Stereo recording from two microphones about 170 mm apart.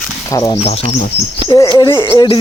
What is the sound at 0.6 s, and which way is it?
Speech, 40° left (ahead or behind).